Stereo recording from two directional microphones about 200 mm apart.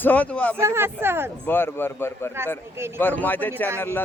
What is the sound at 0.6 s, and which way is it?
Speech, 15° right (ahead or behind).